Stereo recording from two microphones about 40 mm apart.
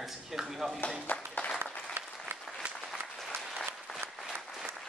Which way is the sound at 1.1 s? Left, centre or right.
Left.